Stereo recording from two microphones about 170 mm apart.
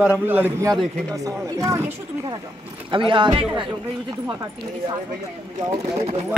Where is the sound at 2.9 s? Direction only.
30° right (ahead or behind).